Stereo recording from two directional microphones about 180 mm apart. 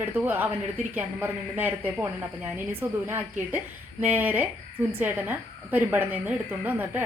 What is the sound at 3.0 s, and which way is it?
A woman's voice, 10° right (ahead or behind).